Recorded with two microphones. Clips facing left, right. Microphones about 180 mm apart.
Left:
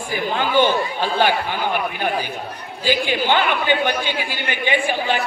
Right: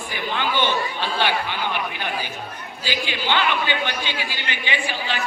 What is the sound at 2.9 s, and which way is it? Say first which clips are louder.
Speech: left 6 dB; 50° left (ahead or behind).